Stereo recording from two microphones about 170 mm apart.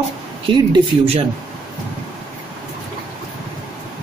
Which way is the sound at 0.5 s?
30° right (ahead or behind).